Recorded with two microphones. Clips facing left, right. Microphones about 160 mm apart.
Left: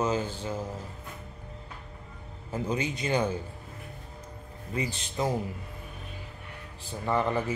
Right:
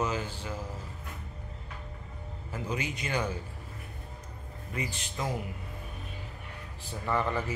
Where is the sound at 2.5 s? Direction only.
30° left (ahead or behind).